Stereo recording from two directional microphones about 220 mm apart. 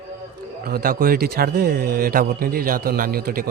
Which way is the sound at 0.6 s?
45° right (ahead or behind).